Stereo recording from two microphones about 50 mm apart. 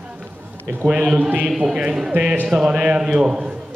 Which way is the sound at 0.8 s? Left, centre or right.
Right.